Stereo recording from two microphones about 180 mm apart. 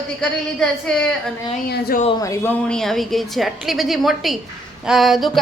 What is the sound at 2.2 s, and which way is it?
Speech, 15° left (ahead or behind).